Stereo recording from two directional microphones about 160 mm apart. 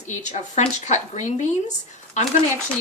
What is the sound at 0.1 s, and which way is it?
A woman's voice, 50° left (ahead or behind).